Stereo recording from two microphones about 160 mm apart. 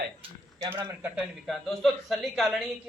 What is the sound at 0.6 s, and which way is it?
Speech, 30° right (ahead or behind).